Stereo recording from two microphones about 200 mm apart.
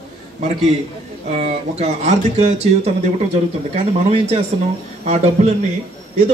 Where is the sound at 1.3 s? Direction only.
35° right (ahead or behind).